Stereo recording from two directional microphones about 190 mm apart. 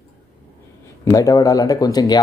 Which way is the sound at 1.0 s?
20° left (ahead or behind).